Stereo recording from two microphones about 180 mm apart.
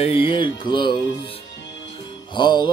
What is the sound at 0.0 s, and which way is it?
Mantra, 30° left (ahead or behind).